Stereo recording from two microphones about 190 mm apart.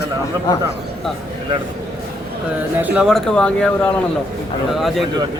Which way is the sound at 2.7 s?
10° right (ahead or behind).